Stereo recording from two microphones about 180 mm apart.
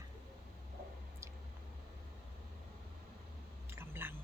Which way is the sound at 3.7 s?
10° right (ahead or behind).